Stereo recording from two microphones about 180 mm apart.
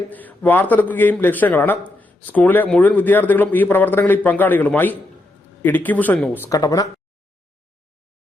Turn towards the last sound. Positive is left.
turn(degrees=20)  # may be behind; listen again after turning